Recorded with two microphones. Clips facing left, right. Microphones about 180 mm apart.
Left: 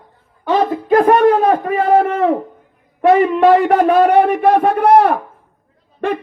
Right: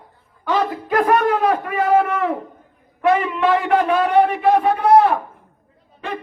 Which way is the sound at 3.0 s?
40° left (ahead or behind).